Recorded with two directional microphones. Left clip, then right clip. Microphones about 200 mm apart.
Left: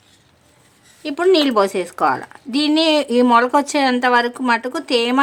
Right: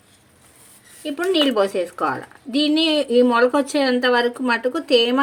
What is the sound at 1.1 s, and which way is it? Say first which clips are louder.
A woman's voice: left 4 dB; 30° left (ahead or behind).